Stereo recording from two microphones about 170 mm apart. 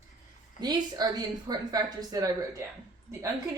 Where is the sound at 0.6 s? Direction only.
25° right (ahead or behind).